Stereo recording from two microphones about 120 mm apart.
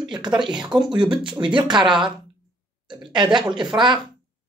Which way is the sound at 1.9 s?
5° right (ahead or behind).